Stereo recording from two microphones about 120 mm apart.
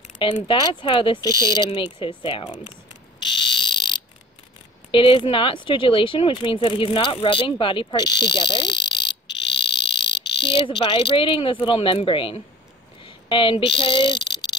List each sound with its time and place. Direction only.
0.2 s speech: 50° left (ahead or behind)
0.6 s speech: 40° left (ahead or behind)
1.3 s speech: 25° right (ahead or behind)
1.7 s speech: 45° left (ahead or behind)
3.3 s frog: 40° left (ahead or behind)
4.9 s speech: 45° left (ahead or behind)